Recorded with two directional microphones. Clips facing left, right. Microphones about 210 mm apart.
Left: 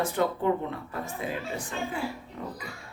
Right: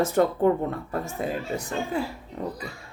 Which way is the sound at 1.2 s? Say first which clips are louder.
Right 4 dB; 45° right (ahead or behind).